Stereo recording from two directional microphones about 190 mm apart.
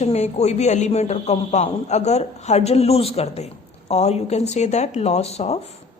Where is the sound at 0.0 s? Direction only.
35° left (ahead or behind).